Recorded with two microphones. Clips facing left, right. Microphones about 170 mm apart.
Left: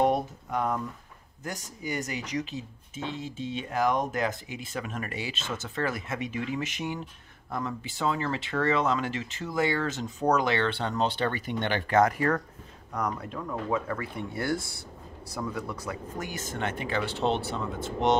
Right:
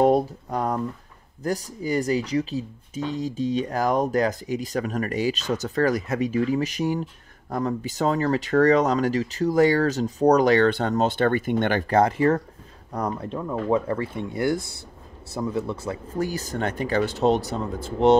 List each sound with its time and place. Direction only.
0.0 s speech: 35° right (ahead or behind)
11.9 s speech: 30° right (ahead or behind)